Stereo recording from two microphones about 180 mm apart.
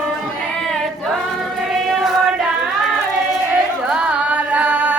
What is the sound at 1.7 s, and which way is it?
Choir, centre (ahead or behind).